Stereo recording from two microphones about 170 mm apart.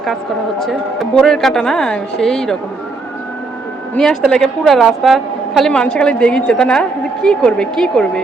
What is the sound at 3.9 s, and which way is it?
A woman's voice, 5° left (ahead or behind).